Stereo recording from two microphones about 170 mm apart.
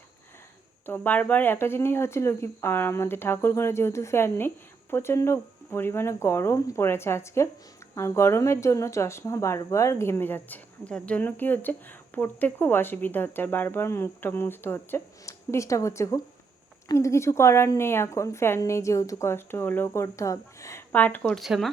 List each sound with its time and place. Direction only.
0.9 s speech: 10° left (ahead or behind)